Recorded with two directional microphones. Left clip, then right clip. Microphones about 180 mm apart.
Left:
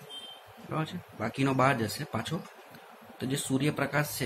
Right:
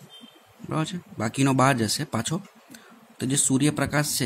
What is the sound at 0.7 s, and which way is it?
Speech, 55° right (ahead or behind).